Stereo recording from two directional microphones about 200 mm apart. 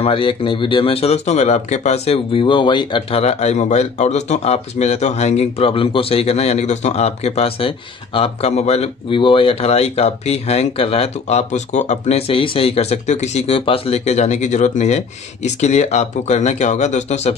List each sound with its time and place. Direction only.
0.0 s speech: 25° left (ahead or behind)